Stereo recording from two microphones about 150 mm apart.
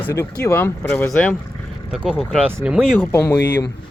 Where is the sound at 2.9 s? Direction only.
15° left (ahead or behind).